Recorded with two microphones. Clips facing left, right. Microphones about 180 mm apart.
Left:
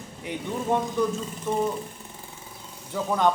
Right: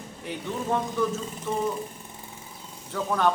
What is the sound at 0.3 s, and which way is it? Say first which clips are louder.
Speech: left 2 dB; 15° left (ahead or behind).